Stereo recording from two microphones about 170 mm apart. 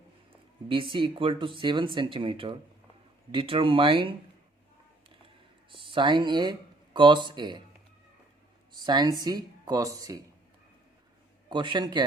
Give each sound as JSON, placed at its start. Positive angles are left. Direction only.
{"t": 0.7, "sound": "speech", "side_deg": -30}
{"t": 5.7, "sound": "speech", "side_deg": -30}
{"t": 8.8, "sound": "speech", "side_deg": -25}
{"t": 11.4, "sound": "speech", "side_deg": -25}